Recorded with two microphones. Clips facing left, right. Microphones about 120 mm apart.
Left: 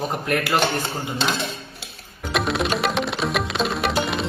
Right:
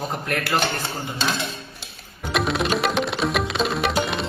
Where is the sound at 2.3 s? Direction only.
Centre (ahead or behind).